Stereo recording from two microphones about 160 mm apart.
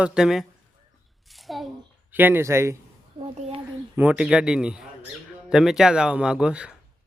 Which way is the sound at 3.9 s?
10° right (ahead or behind).